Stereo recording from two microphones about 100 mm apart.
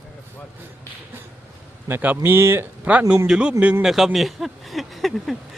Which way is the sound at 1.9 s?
20° right (ahead or behind).